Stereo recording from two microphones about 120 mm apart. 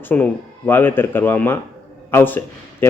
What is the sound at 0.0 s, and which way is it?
Speech, 15° left (ahead or behind).